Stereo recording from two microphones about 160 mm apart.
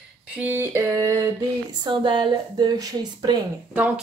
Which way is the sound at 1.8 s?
30° right (ahead or behind).